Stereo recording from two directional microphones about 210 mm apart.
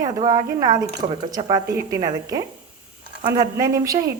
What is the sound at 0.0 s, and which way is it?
A woman's voice, 20° right (ahead or behind).